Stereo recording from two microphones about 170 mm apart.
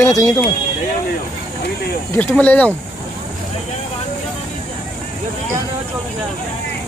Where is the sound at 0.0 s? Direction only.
15° left (ahead or behind).